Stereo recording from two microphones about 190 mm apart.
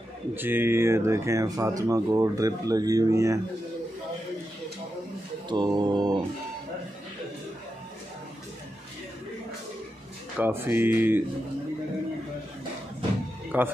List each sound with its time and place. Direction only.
0.4 s speech: 10° right (ahead or behind)
5.5 s music: 25° right (ahead or behind)
10.3 s speech: 10° right (ahead or behind)
13.5 s speech: 10° right (ahead or behind)